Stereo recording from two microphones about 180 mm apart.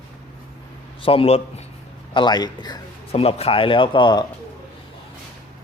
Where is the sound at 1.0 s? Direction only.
30° left (ahead or behind).